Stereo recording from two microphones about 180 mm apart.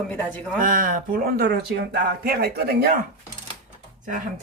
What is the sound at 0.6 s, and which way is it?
Speech, 50° right (ahead or behind).